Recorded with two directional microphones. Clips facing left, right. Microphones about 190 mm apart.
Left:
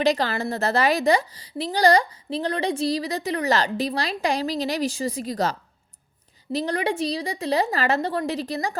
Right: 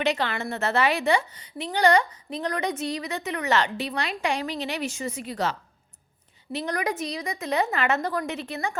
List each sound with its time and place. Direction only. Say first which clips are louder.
0.0 s speech: left 4 dB; 35° left (ahead or behind)